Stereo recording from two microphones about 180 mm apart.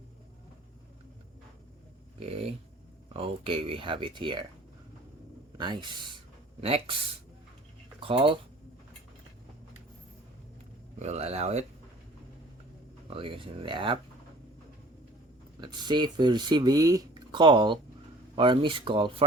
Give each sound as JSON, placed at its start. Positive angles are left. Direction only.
{"t": 2.1, "sound": "dog", "side_deg": -35}
{"t": 3.1, "sound": "speech", "side_deg": -30}
{"t": 5.5, "sound": "speech", "side_deg": -25}
{"t": 8.0, "sound": "speech", "side_deg": -30}
{"t": 11.0, "sound": "speech", "side_deg": -35}
{"t": 13.1, "sound": "speech", "side_deg": -30}
{"t": 15.6, "sound": "speech", "side_deg": -25}